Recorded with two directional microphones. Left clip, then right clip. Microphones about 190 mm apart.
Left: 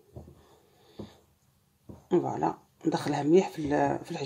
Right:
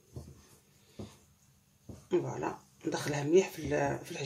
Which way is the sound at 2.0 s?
55° left (ahead or behind).